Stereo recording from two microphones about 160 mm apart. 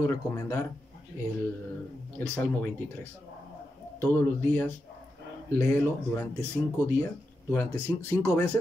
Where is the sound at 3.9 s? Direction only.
10° left (ahead or behind).